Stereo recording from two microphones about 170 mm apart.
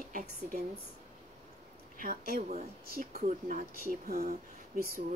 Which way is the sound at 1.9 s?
55° right (ahead or behind).